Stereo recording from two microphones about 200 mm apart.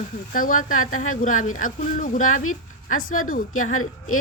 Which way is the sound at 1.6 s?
40° left (ahead or behind).